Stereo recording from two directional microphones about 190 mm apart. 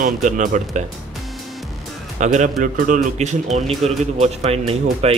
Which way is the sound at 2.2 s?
40° right (ahead or behind).